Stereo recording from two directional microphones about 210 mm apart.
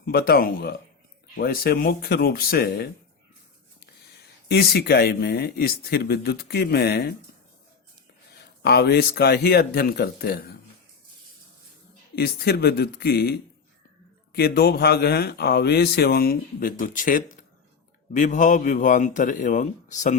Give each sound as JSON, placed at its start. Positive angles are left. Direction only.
{"t": 0.0, "sound": "speech", "side_deg": 45}
{"t": 4.4, "sound": "speech", "side_deg": 50}
{"t": 8.6, "sound": "speech", "side_deg": 50}
{"t": 12.1, "sound": "speech", "side_deg": 50}
{"t": 14.3, "sound": "a man's voice", "side_deg": 50}